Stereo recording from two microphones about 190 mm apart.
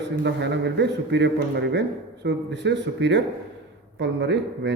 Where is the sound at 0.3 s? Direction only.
65° right (ahead or behind).